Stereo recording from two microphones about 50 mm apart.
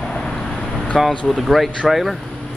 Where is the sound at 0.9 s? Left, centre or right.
Centre.